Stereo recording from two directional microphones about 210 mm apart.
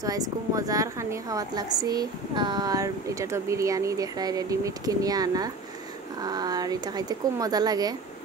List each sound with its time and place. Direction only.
0.0 s a woman's voice: 15° right (ahead or behind)